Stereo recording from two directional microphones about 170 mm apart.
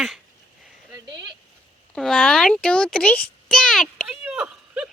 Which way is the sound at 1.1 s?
25° right (ahead or behind).